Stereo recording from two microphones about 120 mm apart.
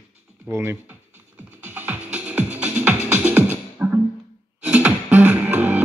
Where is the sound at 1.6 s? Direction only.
15° right (ahead or behind).